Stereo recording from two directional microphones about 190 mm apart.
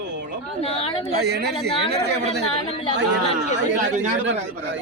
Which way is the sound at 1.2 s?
60° right (ahead or behind).